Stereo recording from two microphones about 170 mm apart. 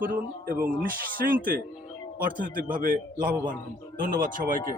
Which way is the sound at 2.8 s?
55° right (ahead or behind).